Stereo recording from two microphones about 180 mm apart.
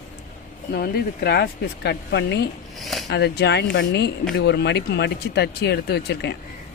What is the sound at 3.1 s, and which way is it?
Speech, 70° left (ahead or behind).